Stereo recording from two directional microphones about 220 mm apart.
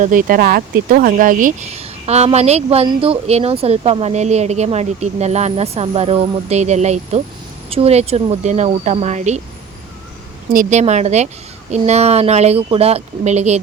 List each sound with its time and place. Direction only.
0.0 s speech: 35° right (ahead or behind)
10.5 s a woman's voice: 35° right (ahead or behind)